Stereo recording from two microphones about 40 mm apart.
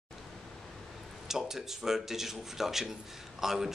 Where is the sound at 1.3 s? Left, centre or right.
Centre.